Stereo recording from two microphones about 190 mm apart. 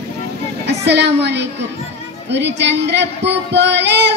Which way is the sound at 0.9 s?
60° right (ahead or behind).